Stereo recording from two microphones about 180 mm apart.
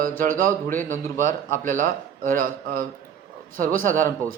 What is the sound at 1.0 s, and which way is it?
Speech, 15° left (ahead or behind).